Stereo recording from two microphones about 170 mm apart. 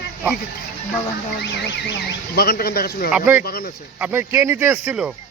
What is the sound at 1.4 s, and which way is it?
Speech, 90° left.